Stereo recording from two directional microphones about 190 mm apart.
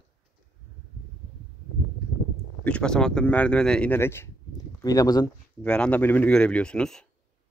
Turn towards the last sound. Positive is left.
turn(degrees=5)  # may be behind; listen again after turning